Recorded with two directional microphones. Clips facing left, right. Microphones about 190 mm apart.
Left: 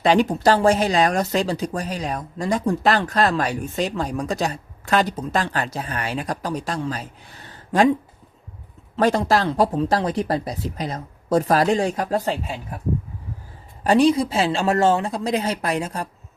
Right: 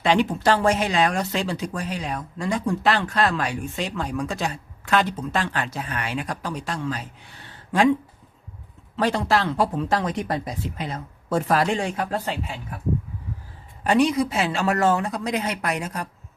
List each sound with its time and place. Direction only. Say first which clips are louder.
0.0 s speech: left 3 dB; 40° left (ahead or behind)
9.0 s speech: left 3 dB; 45° left (ahead or behind)
13.8 s speech: left 3 dB; 30° left (ahead or behind)